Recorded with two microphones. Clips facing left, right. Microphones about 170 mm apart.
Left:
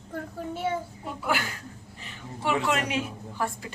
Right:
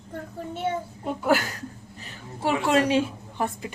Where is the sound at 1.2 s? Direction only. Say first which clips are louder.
Right 6 dB; 40° right (ahead or behind); by 3.7 s 20° right (ahead or behind).